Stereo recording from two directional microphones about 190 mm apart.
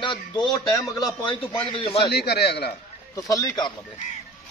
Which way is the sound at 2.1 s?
60° left (ahead or behind).